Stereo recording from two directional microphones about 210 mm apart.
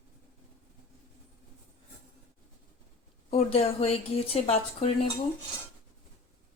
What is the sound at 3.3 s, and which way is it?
A woman's voice, 30° left (ahead or behind).